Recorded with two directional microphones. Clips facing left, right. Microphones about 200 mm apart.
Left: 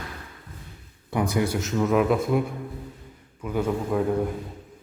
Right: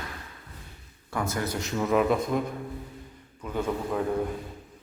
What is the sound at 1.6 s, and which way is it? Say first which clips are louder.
Speech: left 1 dB; centre (ahead or behind).